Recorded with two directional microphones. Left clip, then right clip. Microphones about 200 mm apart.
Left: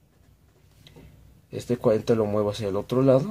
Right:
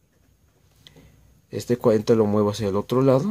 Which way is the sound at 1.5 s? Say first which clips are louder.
Right 3 dB; 35° right (ahead or behind).